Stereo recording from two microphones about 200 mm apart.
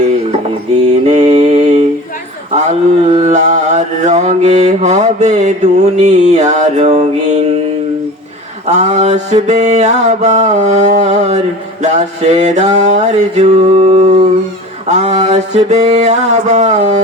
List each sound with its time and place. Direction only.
1.0 s mantra: 30° right (ahead or behind)
8.6 s mantra: 35° right (ahead or behind)